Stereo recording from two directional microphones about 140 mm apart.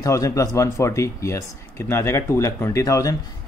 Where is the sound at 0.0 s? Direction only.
25° left (ahead or behind).